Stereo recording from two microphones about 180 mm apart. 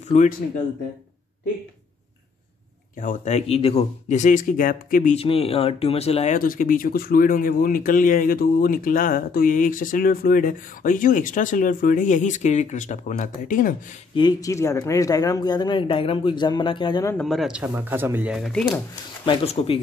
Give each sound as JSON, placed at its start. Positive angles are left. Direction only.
{"t": 0.1, "sound": "speech", "side_deg": 40}
{"t": 3.0, "sound": "speech", "side_deg": 40}
{"t": 5.1, "sound": "speech", "side_deg": 35}
{"t": 6.3, "sound": "speech", "side_deg": 50}
{"t": 14.1, "sound": "speech", "side_deg": 20}
{"t": 17.0, "sound": "speech", "side_deg": 10}
{"t": 17.3, "sound": "speech", "side_deg": -5}
{"t": 19.2, "sound": "speech", "side_deg": 30}